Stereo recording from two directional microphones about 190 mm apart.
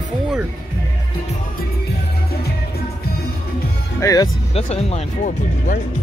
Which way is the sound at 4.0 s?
20° left (ahead or behind).